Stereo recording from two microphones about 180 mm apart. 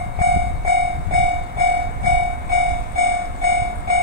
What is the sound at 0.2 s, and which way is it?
Train, 65° right (ahead or behind).